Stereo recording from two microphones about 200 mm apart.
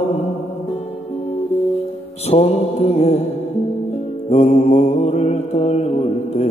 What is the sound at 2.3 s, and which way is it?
Music, 30° left (ahead or behind).